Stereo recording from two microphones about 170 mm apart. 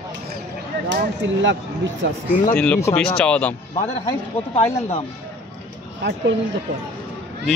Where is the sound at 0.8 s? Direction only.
90° right.